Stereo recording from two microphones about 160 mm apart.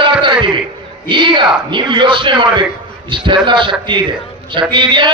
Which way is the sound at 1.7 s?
30° right (ahead or behind).